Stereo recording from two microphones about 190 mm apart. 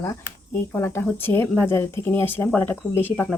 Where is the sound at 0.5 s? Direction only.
15° left (ahead or behind).